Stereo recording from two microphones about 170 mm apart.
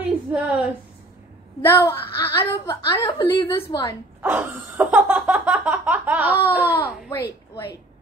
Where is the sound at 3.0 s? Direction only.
25° left (ahead or behind).